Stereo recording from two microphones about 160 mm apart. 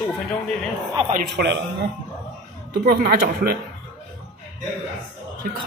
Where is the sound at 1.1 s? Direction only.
90° right.